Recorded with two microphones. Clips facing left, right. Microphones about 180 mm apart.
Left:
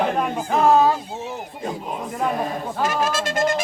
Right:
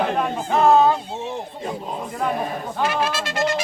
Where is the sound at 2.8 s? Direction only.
45° left (ahead or behind).